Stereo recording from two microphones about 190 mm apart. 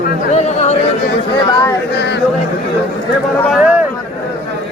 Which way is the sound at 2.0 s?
65° left (ahead or behind).